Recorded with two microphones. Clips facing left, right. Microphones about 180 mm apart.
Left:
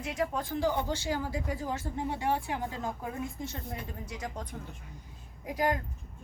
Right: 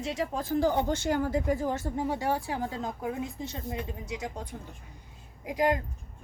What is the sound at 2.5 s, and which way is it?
Speech, 20° right (ahead or behind).